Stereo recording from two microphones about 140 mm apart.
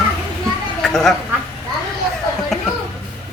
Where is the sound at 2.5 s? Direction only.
Centre (ahead or behind).